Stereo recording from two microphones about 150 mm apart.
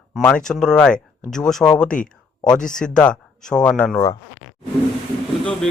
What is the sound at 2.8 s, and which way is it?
Speech, 5° left (ahead or behind).